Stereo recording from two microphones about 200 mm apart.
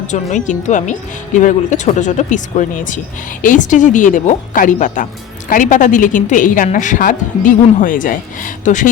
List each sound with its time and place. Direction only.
0.1 s a woman's voice: 35° left (ahead or behind)